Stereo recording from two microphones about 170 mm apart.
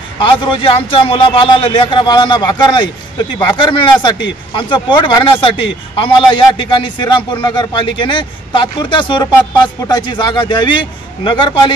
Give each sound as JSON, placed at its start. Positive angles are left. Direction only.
{"t": 0.2, "sound": "a man's voice", "side_deg": 30}